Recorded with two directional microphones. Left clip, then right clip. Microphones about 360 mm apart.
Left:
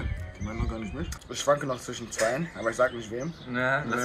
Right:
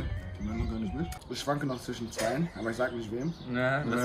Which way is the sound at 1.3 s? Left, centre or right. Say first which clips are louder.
Left 7 dB; centre.